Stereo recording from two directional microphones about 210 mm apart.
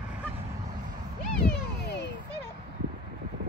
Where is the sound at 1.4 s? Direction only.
55° left (ahead or behind).